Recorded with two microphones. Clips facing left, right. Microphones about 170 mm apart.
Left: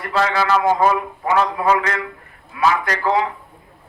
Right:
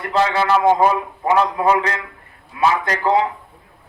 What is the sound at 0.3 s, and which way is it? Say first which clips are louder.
A man's voice: right 2 dB; 20° right (ahead or behind).